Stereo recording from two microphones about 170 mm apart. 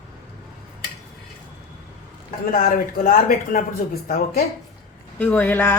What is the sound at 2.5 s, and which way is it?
Speech, 60° left (ahead or behind).